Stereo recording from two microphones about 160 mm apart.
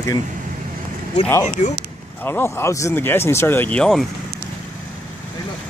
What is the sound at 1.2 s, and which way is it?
Speech, 5° left (ahead or behind).